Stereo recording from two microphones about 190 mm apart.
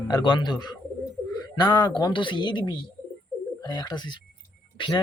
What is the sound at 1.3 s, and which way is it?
Bird, 20° left (ahead or behind).